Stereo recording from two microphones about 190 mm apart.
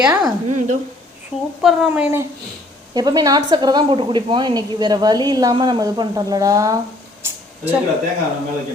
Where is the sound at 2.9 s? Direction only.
20° right (ahead or behind).